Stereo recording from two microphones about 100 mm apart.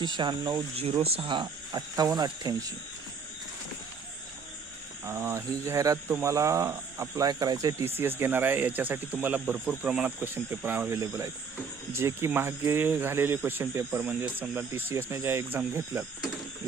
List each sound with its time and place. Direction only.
0.0 s speech: 50° right (ahead or behind)
0.8 s speech: 80° right; by 2.7 s 45° right (ahead or behind)
5.0 s speech: 25° right (ahead or behind)
7.9 s speech: 20° right (ahead or behind)
10.9 s speech: 35° right (ahead or behind)